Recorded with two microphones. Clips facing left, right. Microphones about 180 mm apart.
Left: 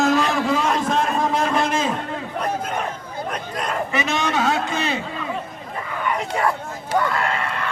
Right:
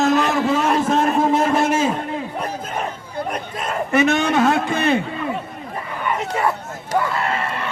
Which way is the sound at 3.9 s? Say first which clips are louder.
Right 8 dB; 55° right (ahead or behind).